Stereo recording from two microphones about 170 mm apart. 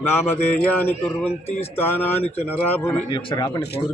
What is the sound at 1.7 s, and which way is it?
A man's voice, 10° left (ahead or behind).